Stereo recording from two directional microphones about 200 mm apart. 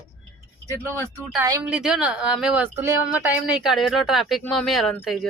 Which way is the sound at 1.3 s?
15° right (ahead or behind).